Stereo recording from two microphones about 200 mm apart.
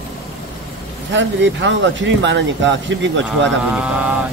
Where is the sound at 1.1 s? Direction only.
70° right (ahead or behind).